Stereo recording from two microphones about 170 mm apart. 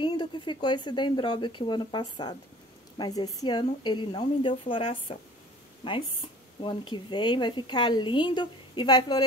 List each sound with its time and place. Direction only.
0.0 s a woman's voice: 30° left (ahead or behind)